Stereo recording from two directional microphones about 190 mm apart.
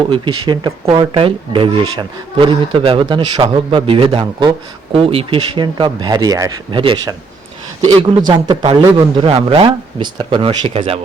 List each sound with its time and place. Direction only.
0.0 s speech: 25° right (ahead or behind)